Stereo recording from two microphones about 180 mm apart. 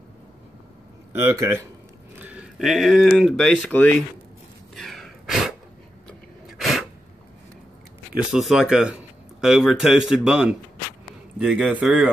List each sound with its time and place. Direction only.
1.1 s speech: 15° right (ahead or behind); by 3.9 s 5° left (ahead or behind)
4.7 s a sound: centre (ahead or behind)
6.6 s sneeze: centre (ahead or behind)
8.2 s speech: centre (ahead or behind)